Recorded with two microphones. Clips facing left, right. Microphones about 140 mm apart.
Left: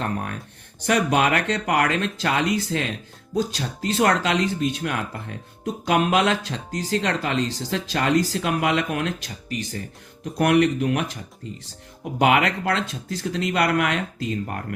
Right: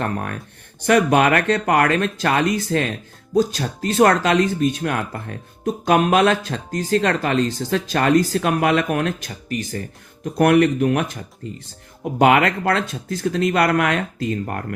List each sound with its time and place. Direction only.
0.0 s speech: 55° right (ahead or behind)